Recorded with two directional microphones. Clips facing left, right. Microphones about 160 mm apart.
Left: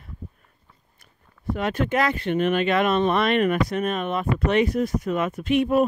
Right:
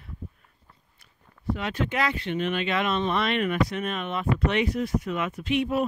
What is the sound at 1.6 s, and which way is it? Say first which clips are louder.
Speech: left 6 dB; 50° left (ahead or behind).